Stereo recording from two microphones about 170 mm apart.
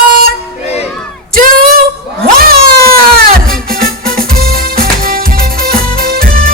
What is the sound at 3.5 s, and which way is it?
Music, 60° right (ahead or behind).